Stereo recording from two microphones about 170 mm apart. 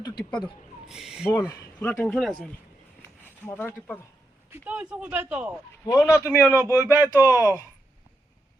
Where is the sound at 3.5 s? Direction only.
15° left (ahead or behind).